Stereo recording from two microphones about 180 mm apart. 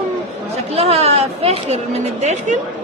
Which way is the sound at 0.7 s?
35° right (ahead or behind).